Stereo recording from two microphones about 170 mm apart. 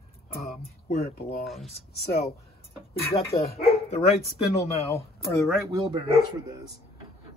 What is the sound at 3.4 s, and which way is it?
Speech, 40° left (ahead or behind).